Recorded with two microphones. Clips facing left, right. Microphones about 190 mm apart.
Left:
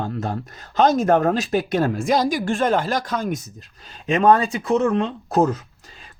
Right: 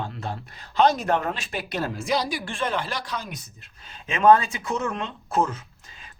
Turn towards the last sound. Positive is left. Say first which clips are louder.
# left 6 dB
turn(degrees=40)  # may be behind; listen again after turning